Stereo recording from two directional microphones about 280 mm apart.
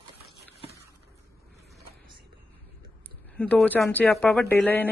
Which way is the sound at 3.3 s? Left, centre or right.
Centre.